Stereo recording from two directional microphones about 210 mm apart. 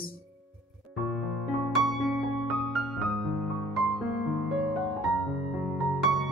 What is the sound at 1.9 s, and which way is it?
Music, centre (ahead or behind).